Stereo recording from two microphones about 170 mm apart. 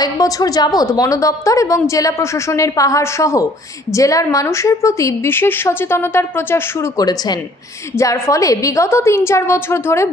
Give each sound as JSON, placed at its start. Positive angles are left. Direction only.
{"t": 0.0, "sound": "a woman's voice", "side_deg": 20}